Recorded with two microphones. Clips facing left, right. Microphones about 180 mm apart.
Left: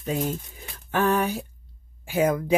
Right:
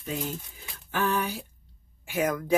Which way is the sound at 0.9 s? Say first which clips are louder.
Left 5 dB; 55° left (ahead or behind).